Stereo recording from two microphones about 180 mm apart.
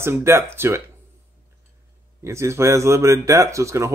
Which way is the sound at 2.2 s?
15° right (ahead or behind).